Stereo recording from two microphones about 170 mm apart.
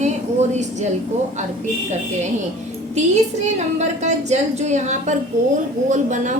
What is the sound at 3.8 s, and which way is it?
A woman's voice, 40° right (ahead or behind).